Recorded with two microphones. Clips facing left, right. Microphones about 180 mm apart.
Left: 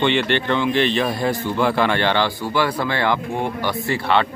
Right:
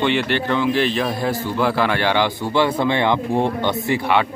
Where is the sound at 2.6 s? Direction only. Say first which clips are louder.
Right 3 dB; 20° right (ahead or behind).